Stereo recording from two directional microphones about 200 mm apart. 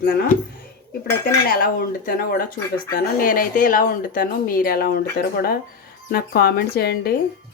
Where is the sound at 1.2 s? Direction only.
45° left (ahead or behind).